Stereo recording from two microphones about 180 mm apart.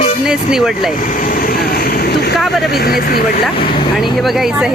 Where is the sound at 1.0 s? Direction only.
45° left (ahead or behind).